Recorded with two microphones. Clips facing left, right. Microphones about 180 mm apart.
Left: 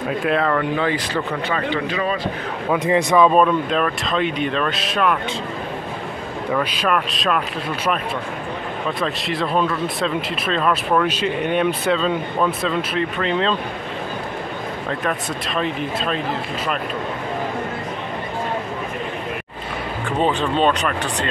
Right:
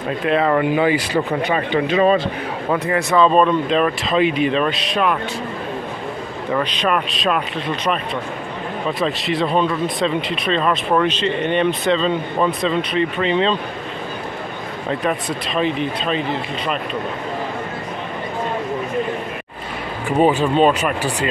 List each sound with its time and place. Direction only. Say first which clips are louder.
0.2 s speech: right 3 dB; centre (ahead or behind)
0.5 s a man's voice: right 4 dB; 15° right (ahead or behind)
2.8 s speech: left 1 dB; 15° left (ahead or behind); by 5.2 s centre (ahead or behind)
6.5 s speech: right 1 dB; 5° left (ahead or behind)
9.0 s speech: right 4 dB; centre (ahead or behind)
15.5 s speech: right 3 dB; centre (ahead or behind)
20.1 s speech: right 5 dB; 15° right (ahead or behind)